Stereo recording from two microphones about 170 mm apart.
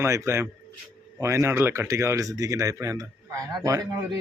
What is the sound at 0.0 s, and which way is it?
A man's voice, 15° right (ahead or behind).